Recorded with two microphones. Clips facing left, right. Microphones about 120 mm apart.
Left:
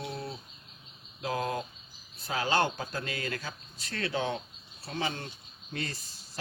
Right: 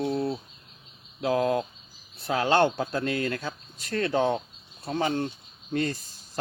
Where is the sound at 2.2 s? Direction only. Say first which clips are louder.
Right 6 dB; 60° right (ahead or behind).